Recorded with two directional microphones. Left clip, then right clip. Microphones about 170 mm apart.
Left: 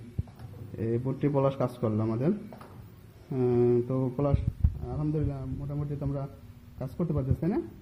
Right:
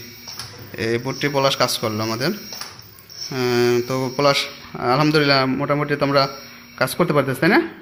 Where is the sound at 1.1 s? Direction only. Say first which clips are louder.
Right 8 dB; 10° right (ahead or behind).